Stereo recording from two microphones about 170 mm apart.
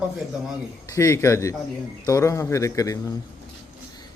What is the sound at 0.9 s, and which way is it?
Speech, 15° left (ahead or behind).